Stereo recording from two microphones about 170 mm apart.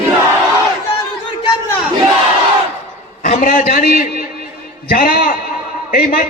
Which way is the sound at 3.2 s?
45° left (ahead or behind).